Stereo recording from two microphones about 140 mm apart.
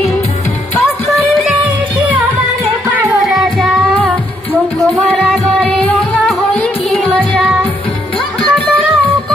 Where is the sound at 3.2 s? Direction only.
Centre (ahead or behind).